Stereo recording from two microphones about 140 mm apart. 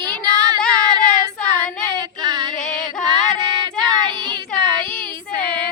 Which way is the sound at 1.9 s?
30° right (ahead or behind).